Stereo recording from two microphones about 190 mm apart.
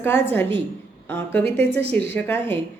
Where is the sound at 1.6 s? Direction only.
60° right (ahead or behind).